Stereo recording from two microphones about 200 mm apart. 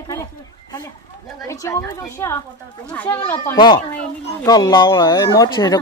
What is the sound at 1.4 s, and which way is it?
Speech, 15° left (ahead or behind).